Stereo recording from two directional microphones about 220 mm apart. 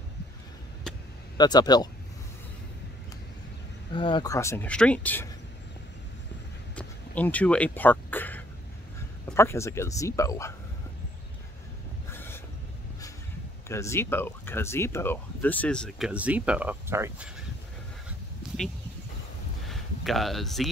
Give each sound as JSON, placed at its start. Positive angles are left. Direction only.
{"t": 1.4, "sound": "speech", "side_deg": 20}
{"t": 3.9, "sound": "speech", "side_deg": 20}
{"t": 6.7, "sound": "a sound", "side_deg": 5}
{"t": 9.3, "sound": "speech", "side_deg": 10}
{"t": 12.1, "sound": "a sound", "side_deg": 10}
{"t": 13.7, "sound": "speech", "side_deg": 10}
{"t": 19.7, "sound": "speech", "side_deg": 0}